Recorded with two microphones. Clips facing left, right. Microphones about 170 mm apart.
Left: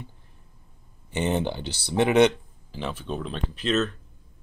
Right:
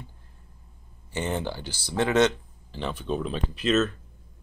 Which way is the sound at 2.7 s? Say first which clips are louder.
Right 2 dB; 5° left (ahead or behind).